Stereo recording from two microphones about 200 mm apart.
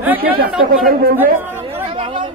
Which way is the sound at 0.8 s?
45° right (ahead or behind).